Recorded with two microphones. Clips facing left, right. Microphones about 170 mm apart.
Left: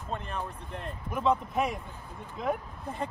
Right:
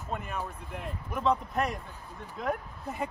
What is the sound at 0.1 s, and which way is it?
Speech, 5° right (ahead or behind).